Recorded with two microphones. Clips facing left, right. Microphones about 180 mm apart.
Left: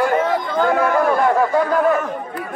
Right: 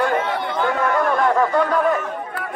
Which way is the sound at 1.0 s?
5° left (ahead or behind).